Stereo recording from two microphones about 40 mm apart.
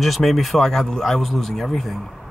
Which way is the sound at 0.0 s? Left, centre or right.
Centre.